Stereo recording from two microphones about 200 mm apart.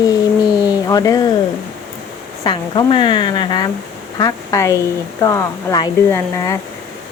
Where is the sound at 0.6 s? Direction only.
20° left (ahead or behind).